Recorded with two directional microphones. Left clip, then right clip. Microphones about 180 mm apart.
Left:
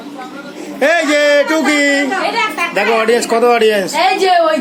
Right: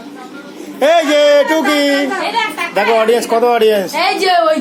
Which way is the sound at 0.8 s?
5° left (ahead or behind).